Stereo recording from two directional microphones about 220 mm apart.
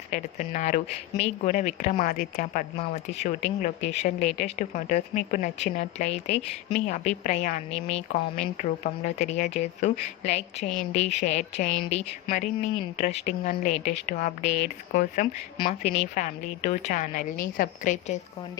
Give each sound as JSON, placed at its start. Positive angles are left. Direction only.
{"t": 0.1, "sound": "speech", "side_deg": 35}
{"t": 15.5, "sound": "speech", "side_deg": 25}